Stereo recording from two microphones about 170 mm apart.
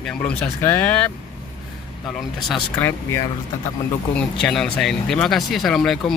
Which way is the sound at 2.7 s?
15° left (ahead or behind).